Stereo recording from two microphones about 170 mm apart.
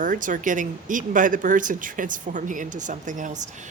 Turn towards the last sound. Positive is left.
turn(degrees=-45)  # may be behind; listen again after turning